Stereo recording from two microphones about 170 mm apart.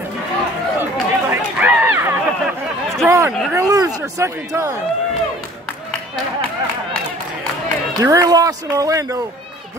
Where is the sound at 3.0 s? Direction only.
20° right (ahead or behind).